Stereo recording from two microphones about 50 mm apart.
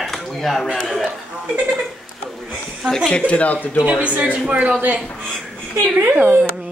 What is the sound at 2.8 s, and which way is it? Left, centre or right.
Speech, centre.